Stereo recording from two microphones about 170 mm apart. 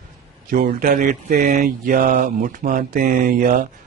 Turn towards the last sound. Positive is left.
turn(degrees=-55)  # may be behind; listen again after turning